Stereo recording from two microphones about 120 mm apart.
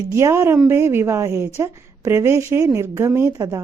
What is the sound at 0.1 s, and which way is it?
Speech, 25° right (ahead or behind).